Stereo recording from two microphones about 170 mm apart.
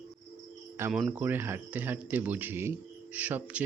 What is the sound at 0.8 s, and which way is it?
Speech, 5° right (ahead or behind).